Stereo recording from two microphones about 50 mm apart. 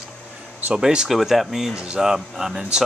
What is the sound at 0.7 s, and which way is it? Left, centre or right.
Speech, centre.